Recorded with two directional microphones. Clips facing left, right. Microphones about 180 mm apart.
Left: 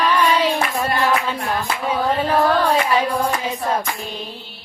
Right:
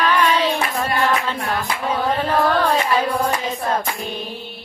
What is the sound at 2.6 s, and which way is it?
Hands, 10° left (ahead or behind).